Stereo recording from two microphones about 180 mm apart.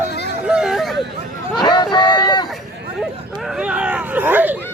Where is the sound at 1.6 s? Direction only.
25° left (ahead or behind).